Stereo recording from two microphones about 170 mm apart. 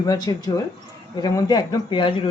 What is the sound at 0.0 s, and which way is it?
A woman's voice, 25° left (ahead or behind).